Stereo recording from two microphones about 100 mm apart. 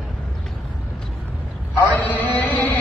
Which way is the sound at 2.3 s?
20° left (ahead or behind).